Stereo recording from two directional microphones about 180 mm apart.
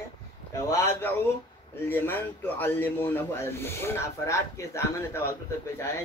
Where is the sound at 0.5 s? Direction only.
15° left (ahead or behind).